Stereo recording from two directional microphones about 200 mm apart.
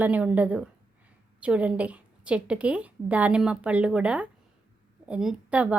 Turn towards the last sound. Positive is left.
turn(degrees=-5)  # may be behind; listen again after turning